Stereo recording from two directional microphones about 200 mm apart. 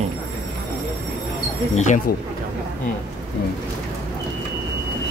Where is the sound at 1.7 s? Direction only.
40° left (ahead or behind).